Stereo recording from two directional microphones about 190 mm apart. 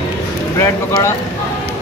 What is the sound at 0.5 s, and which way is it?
Speech, 15° left (ahead or behind).